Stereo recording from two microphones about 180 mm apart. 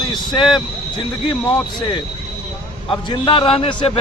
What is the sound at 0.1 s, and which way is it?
Speech, 25° left (ahead or behind).